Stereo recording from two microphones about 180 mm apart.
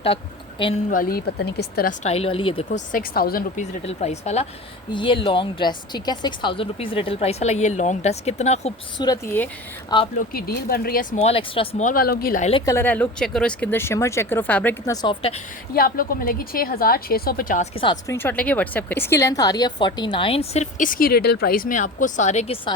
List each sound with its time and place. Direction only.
0.9 s a woman's voice: 55° left (ahead or behind)
2.0 s a woman's voice: 30° left (ahead or behind)
2.6 s a woman's voice: 50° left (ahead or behind)
9.0 s speech: 20° left (ahead or behind)
10.2 s a woman's voice: 55° left (ahead or behind)
11.2 s a woman's voice: 35° left (ahead or behind)
11.9 s a woman's voice: 55° left (ahead or behind)
12.4 s a woman's voice: 35° left (ahead or behind)
12.6 s speech: 15° left (ahead or behind)
15.0 s a woman's voice: 30° left (ahead or behind)
15.7 s a woman's voice: 55° left (ahead or behind)
17.6 s a woman's voice: 30° left (ahead or behind)
18.1 s a woman's voice: 10° left (ahead or behind); by 22.7 s 35° left (ahead or behind)